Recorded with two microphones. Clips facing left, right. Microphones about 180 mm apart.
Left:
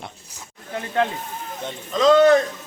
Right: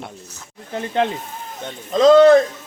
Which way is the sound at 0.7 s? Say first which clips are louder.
Right 2 dB; 25° right (ahead or behind).